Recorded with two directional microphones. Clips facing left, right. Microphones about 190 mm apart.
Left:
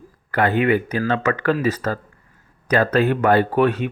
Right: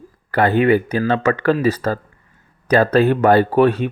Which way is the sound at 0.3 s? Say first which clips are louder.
Right 3 dB; 35° right (ahead or behind).